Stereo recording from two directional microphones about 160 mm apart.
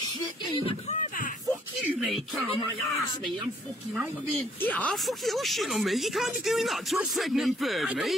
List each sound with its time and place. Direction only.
1.9 s speech: 5° right (ahead or behind)
4.4 s speech: 10° left (ahead or behind)